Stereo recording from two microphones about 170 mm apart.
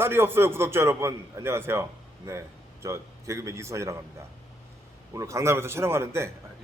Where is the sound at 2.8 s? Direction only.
15° right (ahead or behind).